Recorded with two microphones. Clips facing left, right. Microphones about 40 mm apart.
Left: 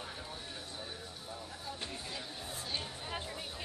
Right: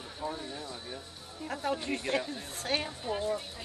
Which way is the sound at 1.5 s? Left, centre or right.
Right.